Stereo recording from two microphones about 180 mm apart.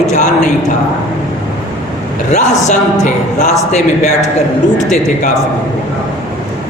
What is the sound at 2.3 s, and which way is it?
A man's voice, 40° left (ahead or behind).